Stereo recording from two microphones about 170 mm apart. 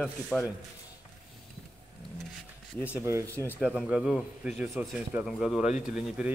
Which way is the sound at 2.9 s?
15° right (ahead or behind).